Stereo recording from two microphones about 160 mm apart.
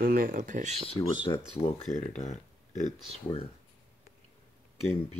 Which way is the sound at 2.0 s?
45° left (ahead or behind).